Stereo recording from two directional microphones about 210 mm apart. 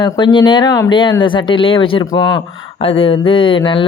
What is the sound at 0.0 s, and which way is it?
Speech, 20° left (ahead or behind).